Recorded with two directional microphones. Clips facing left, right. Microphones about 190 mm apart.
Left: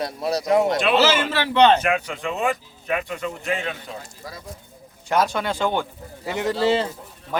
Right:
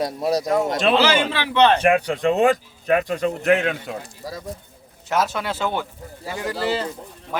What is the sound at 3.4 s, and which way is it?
Speech, 65° right (ahead or behind).